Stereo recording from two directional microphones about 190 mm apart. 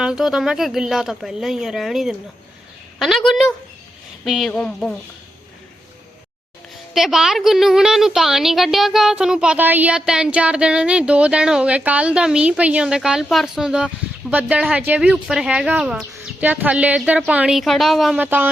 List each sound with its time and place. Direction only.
0.0 s a woman's voice: 5° right (ahead or behind)
6.9 s a woman's voice: centre (ahead or behind)